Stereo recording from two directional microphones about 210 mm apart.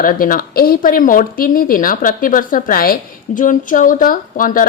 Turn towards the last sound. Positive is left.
turn(degrees=40)  # may be behind; listen again after turning